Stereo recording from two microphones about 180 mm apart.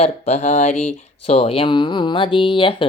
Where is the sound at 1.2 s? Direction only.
30° left (ahead or behind).